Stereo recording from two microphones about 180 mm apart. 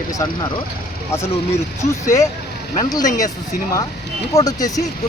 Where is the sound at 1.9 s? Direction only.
15° left (ahead or behind).